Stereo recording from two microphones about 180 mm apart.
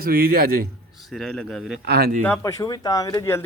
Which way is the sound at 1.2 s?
5° left (ahead or behind).